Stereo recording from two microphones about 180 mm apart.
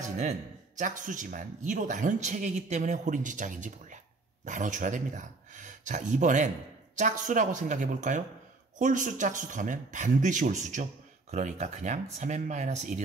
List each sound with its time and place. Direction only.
0.2 s speech: 40° right (ahead or behind)